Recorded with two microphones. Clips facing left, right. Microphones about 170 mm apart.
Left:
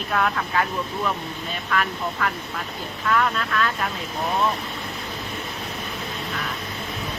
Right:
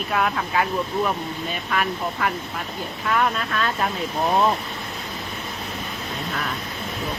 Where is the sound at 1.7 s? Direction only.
20° right (ahead or behind).